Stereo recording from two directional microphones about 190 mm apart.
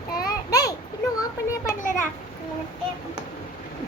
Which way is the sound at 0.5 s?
20° left (ahead or behind).